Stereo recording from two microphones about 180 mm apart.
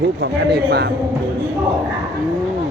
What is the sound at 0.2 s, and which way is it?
Speech, 65° right (ahead or behind).